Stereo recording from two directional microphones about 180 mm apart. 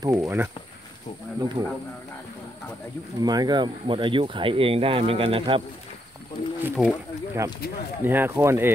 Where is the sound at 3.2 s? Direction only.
20° right (ahead or behind).